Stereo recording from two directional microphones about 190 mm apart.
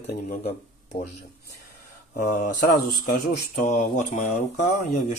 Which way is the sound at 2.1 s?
50° left (ahead or behind).